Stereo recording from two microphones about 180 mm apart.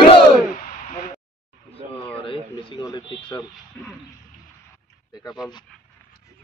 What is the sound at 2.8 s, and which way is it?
Speech, 25° left (ahead or behind).